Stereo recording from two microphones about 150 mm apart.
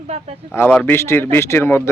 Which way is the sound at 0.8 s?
15° left (ahead or behind).